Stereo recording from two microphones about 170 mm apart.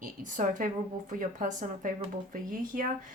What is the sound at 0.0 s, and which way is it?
A woman's voice, 50° right (ahead or behind).